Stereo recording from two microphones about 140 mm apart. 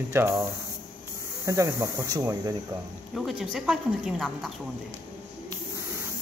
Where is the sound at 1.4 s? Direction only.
25° right (ahead or behind).